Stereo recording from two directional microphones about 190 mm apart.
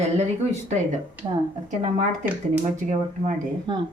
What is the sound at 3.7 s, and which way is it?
Speech, 25° right (ahead or behind).